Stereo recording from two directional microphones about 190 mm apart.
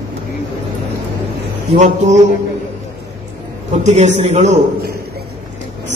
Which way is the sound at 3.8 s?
35° right (ahead or behind).